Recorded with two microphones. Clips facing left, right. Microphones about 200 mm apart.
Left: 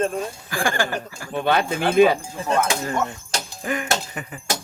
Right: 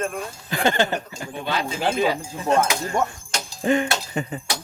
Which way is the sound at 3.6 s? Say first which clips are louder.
Right 5 dB; 25° right (ahead or behind).